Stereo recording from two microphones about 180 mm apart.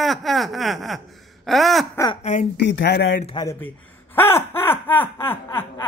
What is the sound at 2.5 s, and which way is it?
Speech, 70° left (ahead or behind).